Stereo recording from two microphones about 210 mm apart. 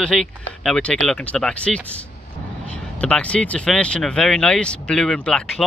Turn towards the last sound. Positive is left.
turn(degrees=5)  # may be behind; listen again after turning